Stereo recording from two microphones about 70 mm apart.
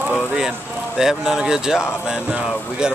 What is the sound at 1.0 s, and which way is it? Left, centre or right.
A man's voice, centre.